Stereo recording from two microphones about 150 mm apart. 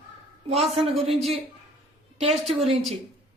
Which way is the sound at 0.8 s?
Centre (ahead or behind).